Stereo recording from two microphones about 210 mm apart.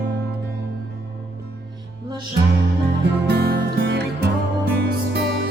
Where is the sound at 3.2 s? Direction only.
50° right (ahead or behind).